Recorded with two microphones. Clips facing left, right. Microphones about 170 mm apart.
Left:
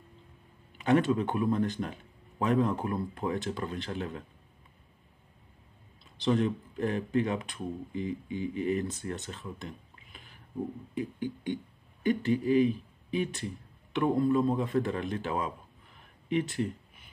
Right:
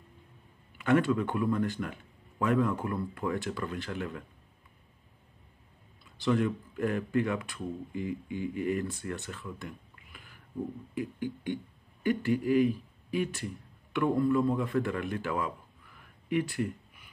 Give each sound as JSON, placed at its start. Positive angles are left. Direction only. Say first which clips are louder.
{"t": 0.7, "sound": "speech", "louder": "even", "side_deg": 20}
{"t": 6.2, "sound": "speech", "louder": "left 1 dB", "side_deg": 20}